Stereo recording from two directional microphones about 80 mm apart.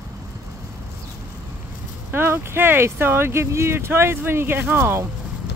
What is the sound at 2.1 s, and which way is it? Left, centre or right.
Speech, right.